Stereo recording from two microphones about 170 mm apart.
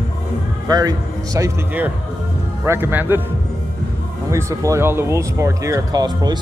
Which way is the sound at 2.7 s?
10° right (ahead or behind).